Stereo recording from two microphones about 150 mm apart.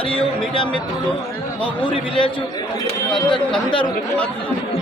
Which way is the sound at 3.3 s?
30° left (ahead or behind).